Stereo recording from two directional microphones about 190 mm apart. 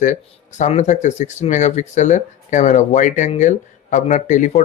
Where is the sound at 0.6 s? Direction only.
40° left (ahead or behind).